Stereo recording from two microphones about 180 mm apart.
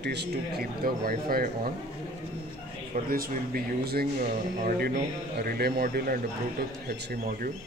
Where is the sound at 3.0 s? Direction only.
55° right (ahead or behind).